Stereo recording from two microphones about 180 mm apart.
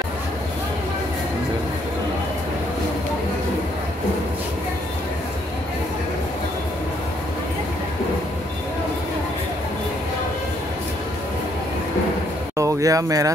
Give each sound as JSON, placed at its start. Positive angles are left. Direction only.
{"t": 12.5, "sound": "speech", "side_deg": -20}